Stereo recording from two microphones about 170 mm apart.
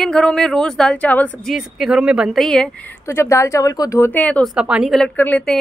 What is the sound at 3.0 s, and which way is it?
A woman's voice, 15° left (ahead or behind).